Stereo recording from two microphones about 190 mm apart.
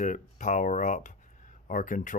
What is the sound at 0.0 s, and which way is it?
Speech, 40° left (ahead or behind).